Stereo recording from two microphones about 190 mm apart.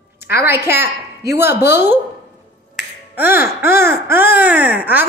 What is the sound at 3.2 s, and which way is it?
A woman's voice, 10° right (ahead or behind).